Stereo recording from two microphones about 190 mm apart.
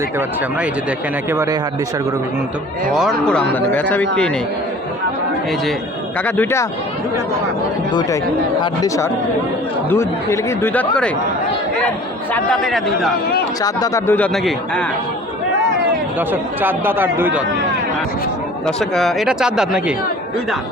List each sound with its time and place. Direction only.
1.3 s speech: 15° right (ahead or behind)
2.9 s speech: centre (ahead or behind)
6.2 s speech: 10° left (ahead or behind)
8.6 s speech: 20° left (ahead or behind)
12.3 s speech: 5° left (ahead or behind)
13.6 s speech: 20° left (ahead or behind); by 14.8 s 5° left (ahead or behind)
16.1 s speech: 10° right (ahead or behind)
18.6 s speech: centre (ahead or behind)